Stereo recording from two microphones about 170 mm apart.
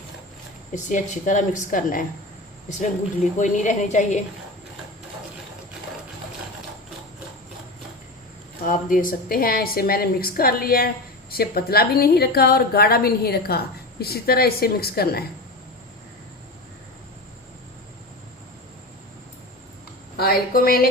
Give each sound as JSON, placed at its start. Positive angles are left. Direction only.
{"t": 0.7, "sound": "a woman's voice", "side_deg": 45}
{"t": 3.3, "sound": "a woman's voice", "side_deg": 45}
{"t": 8.6, "sound": "a woman's voice", "side_deg": 55}
{"t": 20.1, "sound": "a woman's voice", "side_deg": 65}